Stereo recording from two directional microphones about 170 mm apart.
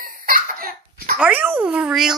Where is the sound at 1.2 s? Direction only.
10° right (ahead or behind).